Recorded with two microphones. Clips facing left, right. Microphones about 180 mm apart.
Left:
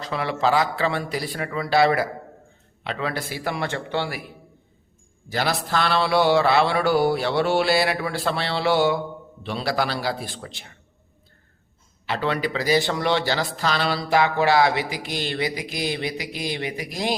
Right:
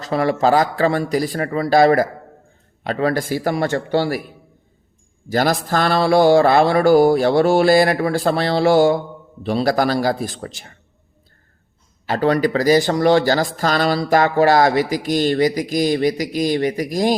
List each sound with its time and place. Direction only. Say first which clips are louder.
0.0 s speech: right 6 dB; 45° right (ahead or behind)
5.3 s speech: right 6 dB; 45° right (ahead or behind)
12.0 s speech: right 8 dB; 45° right (ahead or behind)